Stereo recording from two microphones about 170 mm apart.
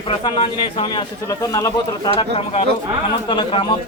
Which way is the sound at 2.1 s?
30° left (ahead or behind).